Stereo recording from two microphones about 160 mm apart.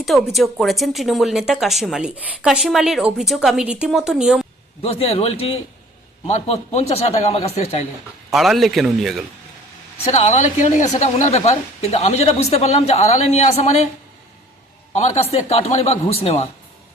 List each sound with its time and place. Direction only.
0.0 s speech: centre (ahead or behind)
4.8 s speech: 35° left (ahead or behind)
8.3 s speech: centre (ahead or behind)
10.1 s speech: 45° left (ahead or behind)
14.9 s speech: 40° left (ahead or behind)